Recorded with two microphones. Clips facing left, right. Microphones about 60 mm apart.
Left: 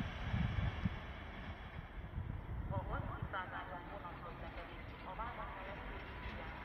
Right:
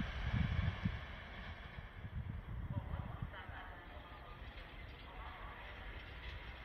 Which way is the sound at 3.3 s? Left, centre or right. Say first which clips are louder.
Left 9 dB; left.